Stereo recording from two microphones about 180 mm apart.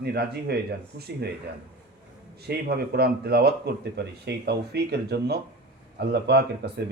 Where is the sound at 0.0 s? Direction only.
65° right (ahead or behind).